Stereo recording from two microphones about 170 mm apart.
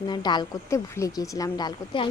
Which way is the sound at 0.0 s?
25° left (ahead or behind).